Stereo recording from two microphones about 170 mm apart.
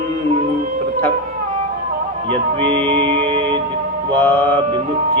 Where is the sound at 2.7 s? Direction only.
35° right (ahead or behind).